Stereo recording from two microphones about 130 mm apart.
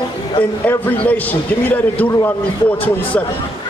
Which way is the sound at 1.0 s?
15° left (ahead or behind).